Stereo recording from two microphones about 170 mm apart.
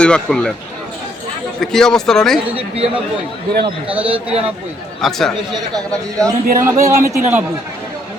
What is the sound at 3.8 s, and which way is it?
Speech, 10° right (ahead or behind).